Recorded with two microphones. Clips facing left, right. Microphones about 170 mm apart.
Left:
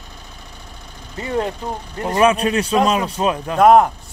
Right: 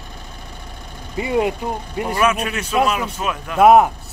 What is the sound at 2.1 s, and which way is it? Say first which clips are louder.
Speech: left 5 dB; 35° left (ahead or behind).